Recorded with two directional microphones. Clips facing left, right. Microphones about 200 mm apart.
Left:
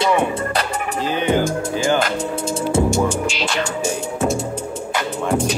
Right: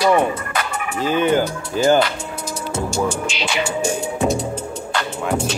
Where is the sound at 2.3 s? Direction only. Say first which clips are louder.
Left 7 dB; 25° left (ahead or behind).